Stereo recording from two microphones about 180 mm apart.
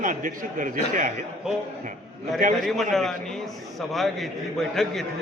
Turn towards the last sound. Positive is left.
turn(degrees=0)  # may be behind; listen again after turning